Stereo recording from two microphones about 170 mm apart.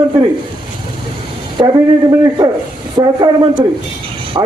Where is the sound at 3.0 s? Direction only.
25° right (ahead or behind).